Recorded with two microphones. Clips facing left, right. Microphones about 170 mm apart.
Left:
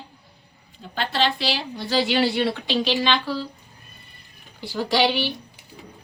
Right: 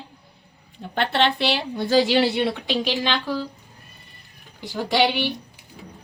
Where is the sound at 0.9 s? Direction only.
60° right (ahead or behind).